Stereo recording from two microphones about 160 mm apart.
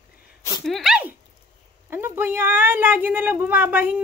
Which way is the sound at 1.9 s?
15° right (ahead or behind).